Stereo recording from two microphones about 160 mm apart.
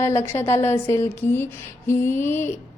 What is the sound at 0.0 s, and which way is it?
A woman's voice, 15° left (ahead or behind).